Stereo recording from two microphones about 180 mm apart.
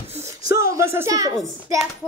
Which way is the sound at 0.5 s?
15° right (ahead or behind).